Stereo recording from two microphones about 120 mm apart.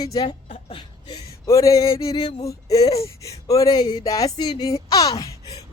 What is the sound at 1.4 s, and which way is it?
Speech, 30° left (ahead or behind).